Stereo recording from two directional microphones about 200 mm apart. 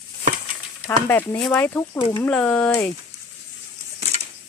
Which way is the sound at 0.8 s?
10° left (ahead or behind).